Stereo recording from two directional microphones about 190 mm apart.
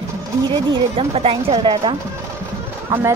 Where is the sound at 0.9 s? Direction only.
30° right (ahead or behind).